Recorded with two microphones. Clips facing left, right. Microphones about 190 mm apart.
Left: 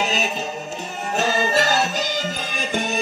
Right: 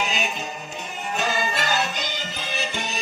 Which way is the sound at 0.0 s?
40° left (ahead or behind).